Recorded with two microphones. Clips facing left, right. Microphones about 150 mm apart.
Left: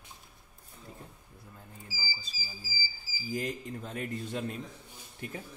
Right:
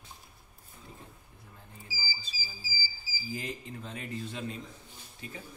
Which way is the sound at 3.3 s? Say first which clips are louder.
Left 5 dB; 50° left (ahead or behind).